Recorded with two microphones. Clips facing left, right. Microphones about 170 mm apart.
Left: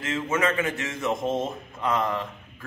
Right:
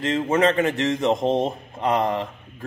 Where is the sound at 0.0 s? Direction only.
35° right (ahead or behind).